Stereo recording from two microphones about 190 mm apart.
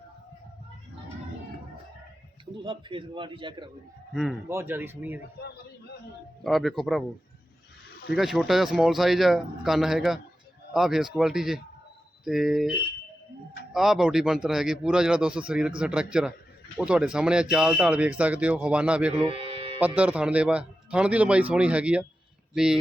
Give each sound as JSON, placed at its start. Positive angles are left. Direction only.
{"t": 2.6, "sound": "a man's voice", "side_deg": -25}
{"t": 4.1, "sound": "speech", "side_deg": 0}
{"t": 4.4, "sound": "a man's voice", "side_deg": -10}
{"t": 5.4, "sound": "a man's voice", "side_deg": 60}
{"t": 6.4, "sound": "speech", "side_deg": 0}
{"t": 8.1, "sound": "speech", "side_deg": 0}
{"t": 13.7, "sound": "speech", "side_deg": 0}
{"t": 19.2, "sound": "music", "side_deg": -30}
{"t": 19.8, "sound": "a man's voice", "side_deg": -5}